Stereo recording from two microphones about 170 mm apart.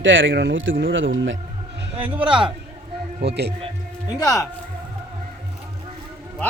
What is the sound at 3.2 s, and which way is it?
Speech, 75° right (ahead or behind).